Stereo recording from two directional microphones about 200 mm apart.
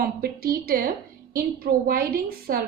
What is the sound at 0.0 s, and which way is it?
A woman's voice, 50° right (ahead or behind).